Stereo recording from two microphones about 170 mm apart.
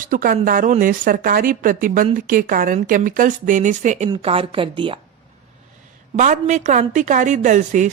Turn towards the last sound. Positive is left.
turn(degrees=-45)  # may be behind; listen again after turning